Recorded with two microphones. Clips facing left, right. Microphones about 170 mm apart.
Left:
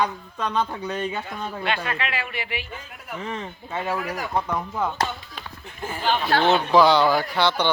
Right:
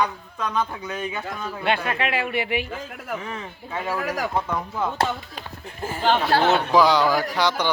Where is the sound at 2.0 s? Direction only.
50° right (ahead or behind).